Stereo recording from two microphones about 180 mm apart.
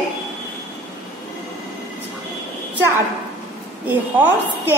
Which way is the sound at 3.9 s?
10° right (ahead or behind).